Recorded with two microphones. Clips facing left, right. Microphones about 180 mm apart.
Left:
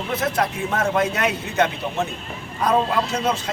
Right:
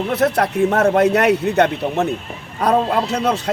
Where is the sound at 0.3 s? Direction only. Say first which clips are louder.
Right 7 dB; 65° right (ahead or behind).